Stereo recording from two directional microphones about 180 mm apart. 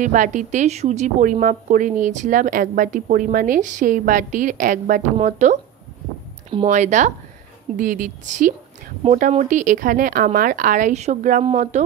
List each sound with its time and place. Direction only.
0.0 s a woman's voice: 45° right (ahead or behind)
6.7 s a woman's voice: 40° right (ahead or behind)